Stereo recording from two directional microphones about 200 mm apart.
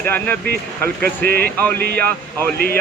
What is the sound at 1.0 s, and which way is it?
Speech, 50° right (ahead or behind).